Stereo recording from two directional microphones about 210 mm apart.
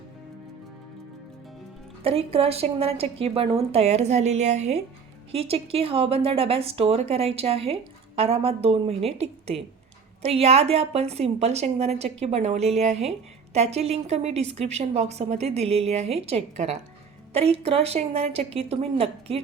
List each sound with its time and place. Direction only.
2.0 s a woman's voice: 30° right (ahead or behind)